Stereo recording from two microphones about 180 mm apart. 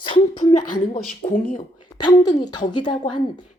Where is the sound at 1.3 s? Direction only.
45° left (ahead or behind).